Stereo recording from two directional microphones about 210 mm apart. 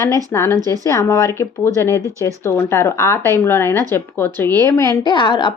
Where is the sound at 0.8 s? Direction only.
15° left (ahead or behind).